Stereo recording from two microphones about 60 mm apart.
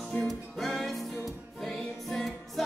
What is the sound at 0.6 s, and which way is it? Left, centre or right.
Music, centre.